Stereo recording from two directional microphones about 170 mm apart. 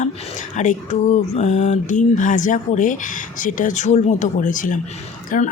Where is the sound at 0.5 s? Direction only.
45° left (ahead or behind).